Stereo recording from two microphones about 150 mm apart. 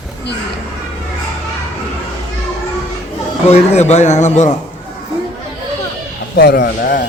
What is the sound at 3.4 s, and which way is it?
A man's voice, 45° left (ahead or behind).